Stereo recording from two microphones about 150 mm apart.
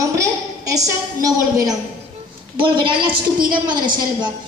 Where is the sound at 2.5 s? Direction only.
35° right (ahead or behind).